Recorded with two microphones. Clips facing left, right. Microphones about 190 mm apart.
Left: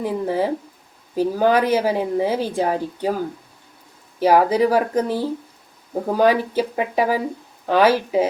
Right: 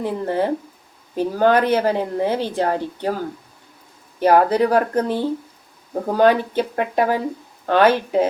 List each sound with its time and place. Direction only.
0.0 s speech: 5° left (ahead or behind)
4.2 s speech: 10° left (ahead or behind)